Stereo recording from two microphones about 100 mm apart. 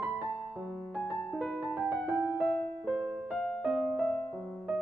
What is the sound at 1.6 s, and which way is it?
Music, 10° right (ahead or behind).